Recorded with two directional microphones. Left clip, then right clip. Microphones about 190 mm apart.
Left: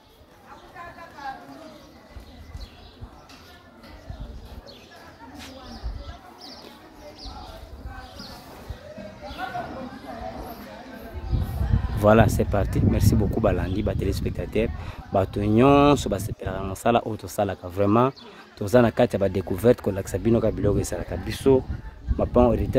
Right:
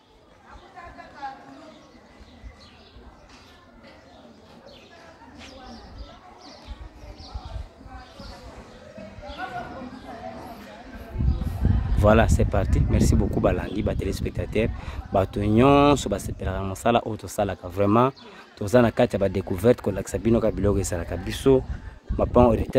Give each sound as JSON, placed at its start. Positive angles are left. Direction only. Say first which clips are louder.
{"t": 12.0, "sound": "speech", "louder": "left 1 dB", "side_deg": 0}